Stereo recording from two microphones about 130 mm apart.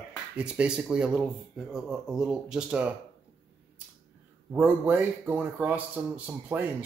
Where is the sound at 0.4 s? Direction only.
10° right (ahead or behind).